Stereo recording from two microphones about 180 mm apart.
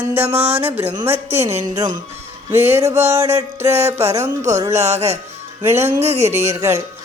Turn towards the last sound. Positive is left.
turn(degrees=-15)  # may be behind; listen again after turning